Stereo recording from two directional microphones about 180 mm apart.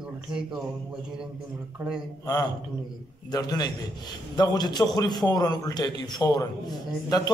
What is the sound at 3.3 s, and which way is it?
A man's voice, 20° left (ahead or behind).